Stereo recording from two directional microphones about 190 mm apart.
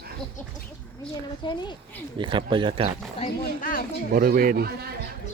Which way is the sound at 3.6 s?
50° left (ahead or behind).